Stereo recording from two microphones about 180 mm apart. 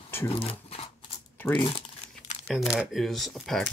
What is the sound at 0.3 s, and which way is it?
Speech, 30° left (ahead or behind).